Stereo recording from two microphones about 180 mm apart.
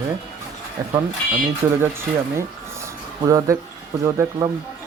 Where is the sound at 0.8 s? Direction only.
20° right (ahead or behind).